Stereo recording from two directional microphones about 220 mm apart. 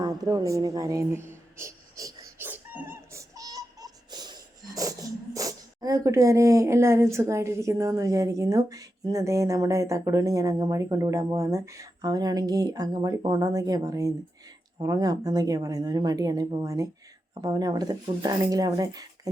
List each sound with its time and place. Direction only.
0.0 s speech: 15° right (ahead or behind)